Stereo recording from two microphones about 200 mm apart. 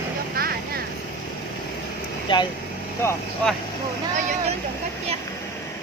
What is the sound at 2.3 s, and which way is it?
Speech, 25° left (ahead or behind).